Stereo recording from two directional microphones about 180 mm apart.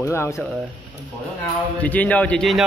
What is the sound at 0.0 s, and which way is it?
Speech, 15° left (ahead or behind).